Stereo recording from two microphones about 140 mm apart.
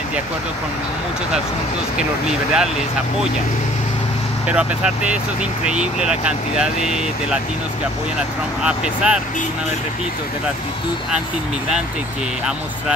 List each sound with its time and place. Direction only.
2.2 s speech: 5° right (ahead or behind)
4.5 s speech: 5° right (ahead or behind)